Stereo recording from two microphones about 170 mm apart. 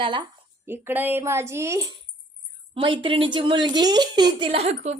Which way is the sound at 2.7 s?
30° right (ahead or behind).